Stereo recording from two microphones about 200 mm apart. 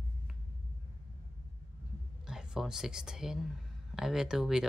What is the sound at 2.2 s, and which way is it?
A woman's voice, centre (ahead or behind).